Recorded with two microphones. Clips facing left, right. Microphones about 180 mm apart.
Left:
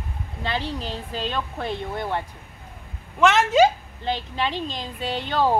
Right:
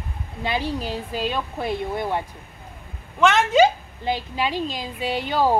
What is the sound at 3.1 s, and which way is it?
Speech, centre (ahead or behind).